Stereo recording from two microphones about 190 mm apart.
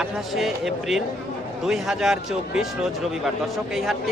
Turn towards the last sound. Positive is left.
turn(degrees=0)  # may be behind; listen again after turning